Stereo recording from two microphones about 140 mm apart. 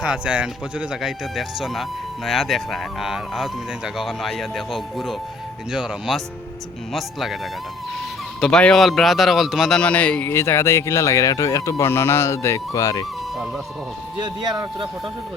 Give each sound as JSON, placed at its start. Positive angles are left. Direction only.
{"t": 0.0, "sound": "speech", "side_deg": -5}
{"t": 8.4, "sound": "a man's voice", "side_deg": 5}
{"t": 14.2, "sound": "speech", "side_deg": -30}